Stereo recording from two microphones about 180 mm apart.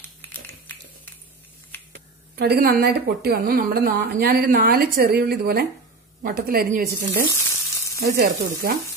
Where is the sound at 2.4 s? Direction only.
60° right (ahead or behind).